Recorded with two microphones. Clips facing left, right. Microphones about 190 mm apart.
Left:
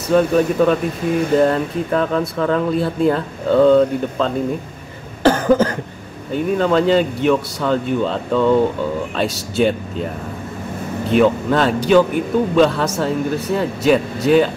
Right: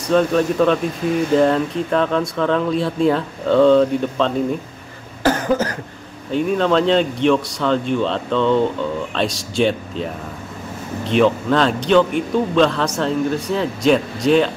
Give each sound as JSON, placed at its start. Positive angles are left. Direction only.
{"t": 0.1, "sound": "speech", "side_deg": 5}
{"t": 5.2, "sound": "cough", "side_deg": 30}
{"t": 6.3, "sound": "speech", "side_deg": 5}
{"t": 11.1, "sound": "speech", "side_deg": 5}